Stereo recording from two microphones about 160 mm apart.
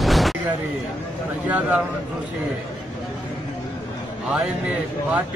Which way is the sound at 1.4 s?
10° right (ahead or behind).